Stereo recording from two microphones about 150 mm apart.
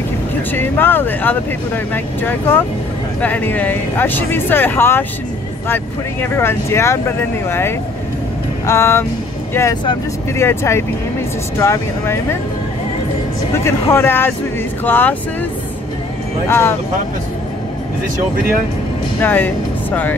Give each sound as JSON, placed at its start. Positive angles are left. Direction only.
{"t": 0.5, "sound": "speech", "side_deg": 15}
{"t": 6.2, "sound": "speech", "side_deg": 15}
{"t": 13.7, "sound": "speech", "side_deg": 15}
{"t": 16.4, "sound": "speech", "side_deg": 15}
{"t": 19.2, "sound": "speech", "side_deg": 10}